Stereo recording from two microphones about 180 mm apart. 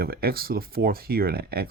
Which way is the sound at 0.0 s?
60° right (ahead or behind).